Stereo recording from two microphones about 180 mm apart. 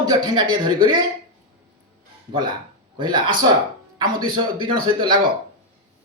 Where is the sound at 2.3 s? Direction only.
25° right (ahead or behind).